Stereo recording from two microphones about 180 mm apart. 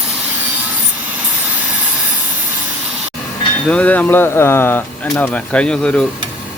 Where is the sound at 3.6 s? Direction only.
10° left (ahead or behind).